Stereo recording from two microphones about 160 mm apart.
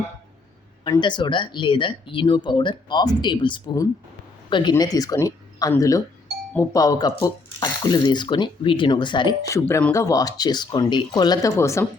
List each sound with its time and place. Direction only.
0.9 s speech: 30° left (ahead or behind)